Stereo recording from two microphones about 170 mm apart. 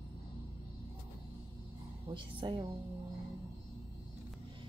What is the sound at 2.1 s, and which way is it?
Speech, 30° right (ahead or behind).